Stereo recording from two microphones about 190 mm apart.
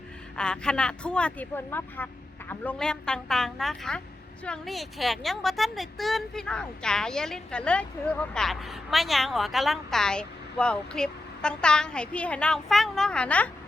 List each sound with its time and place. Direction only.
0.3 s a woman's voice: 5° left (ahead or behind)